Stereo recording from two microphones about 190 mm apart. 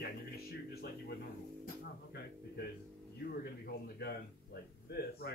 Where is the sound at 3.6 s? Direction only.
55° left (ahead or behind).